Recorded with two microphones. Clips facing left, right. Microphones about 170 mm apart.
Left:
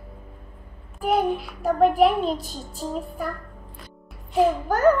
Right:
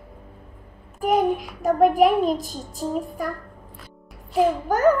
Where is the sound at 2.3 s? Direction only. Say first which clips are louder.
Right 3 dB; 40° right (ahead or behind).